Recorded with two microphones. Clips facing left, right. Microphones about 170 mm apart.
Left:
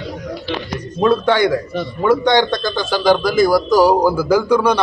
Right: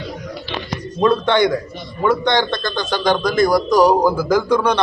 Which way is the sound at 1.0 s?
5° left (ahead or behind).